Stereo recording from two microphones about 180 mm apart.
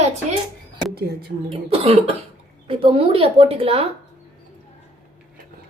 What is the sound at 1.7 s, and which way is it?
Speech, 30° right (ahead or behind).